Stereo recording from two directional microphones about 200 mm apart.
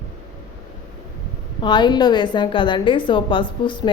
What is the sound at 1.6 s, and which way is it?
A woman's voice, 20° left (ahead or behind).